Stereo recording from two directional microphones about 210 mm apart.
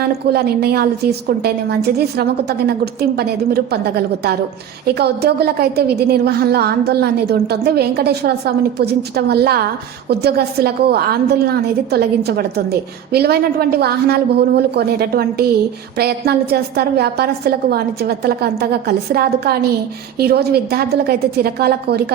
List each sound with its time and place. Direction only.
0.3 s a woman's voice: 50° right (ahead or behind)